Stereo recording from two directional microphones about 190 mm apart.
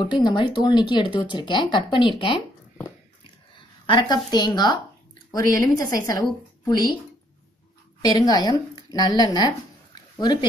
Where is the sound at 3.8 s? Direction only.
25° left (ahead or behind).